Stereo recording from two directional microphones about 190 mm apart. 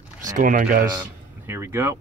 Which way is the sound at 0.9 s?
15° right (ahead or behind).